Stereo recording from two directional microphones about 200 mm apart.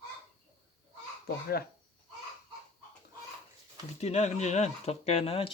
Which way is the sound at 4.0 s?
35° left (ahead or behind).